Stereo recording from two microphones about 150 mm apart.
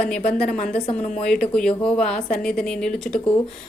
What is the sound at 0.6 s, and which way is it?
Speech, 60° left (ahead or behind).